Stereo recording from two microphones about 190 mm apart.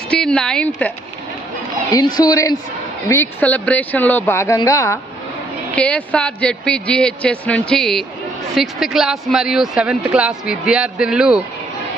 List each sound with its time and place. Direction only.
0.1 s a man's voice: 5° left (ahead or behind)
1.9 s a woman's voice: 20° left (ahead or behind); by 11.4 s 5° right (ahead or behind)